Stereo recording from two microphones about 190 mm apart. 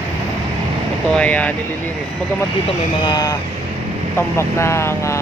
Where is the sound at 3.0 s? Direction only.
20° left (ahead or behind).